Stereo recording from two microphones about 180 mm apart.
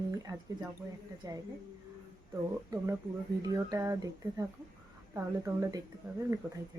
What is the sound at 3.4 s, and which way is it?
Speech, 20° right (ahead or behind).